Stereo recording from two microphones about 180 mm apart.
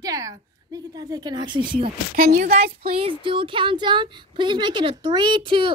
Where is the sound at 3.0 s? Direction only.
30° right (ahead or behind).